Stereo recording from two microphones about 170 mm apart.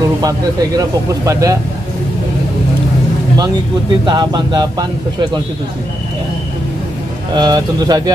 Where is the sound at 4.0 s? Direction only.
25° right (ahead or behind).